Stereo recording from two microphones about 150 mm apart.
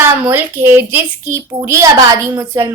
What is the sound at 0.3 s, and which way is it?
A woman's voice, 15° right (ahead or behind).